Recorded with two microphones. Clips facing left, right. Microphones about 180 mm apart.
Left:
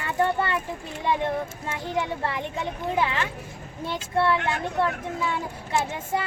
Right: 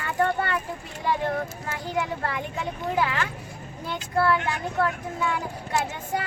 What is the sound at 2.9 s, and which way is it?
Speech, 25° left (ahead or behind).